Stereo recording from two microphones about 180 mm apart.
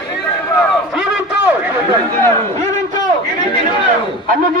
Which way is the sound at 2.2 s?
15° left (ahead or behind).